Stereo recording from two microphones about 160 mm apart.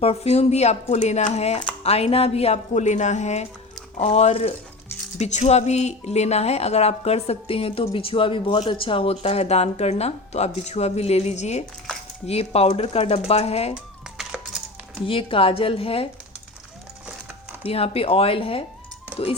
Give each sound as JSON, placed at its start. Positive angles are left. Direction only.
{"t": 0.0, "sound": "chopping", "side_deg": 40}
{"t": 1.8, "sound": "speech", "side_deg": 40}
{"t": 15.0, "sound": "speech", "side_deg": 35}
{"t": 17.6, "sound": "speech", "side_deg": 40}